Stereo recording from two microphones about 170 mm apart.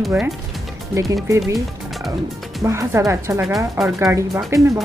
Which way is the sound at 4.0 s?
20° right (ahead or behind).